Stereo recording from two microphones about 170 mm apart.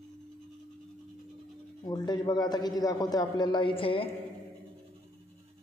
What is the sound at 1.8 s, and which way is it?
A man's voice, 25° left (ahead or behind).